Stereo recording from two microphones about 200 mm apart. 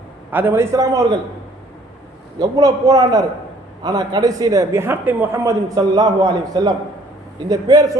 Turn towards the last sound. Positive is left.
turn(degrees=-20)  # may be behind; listen again after turning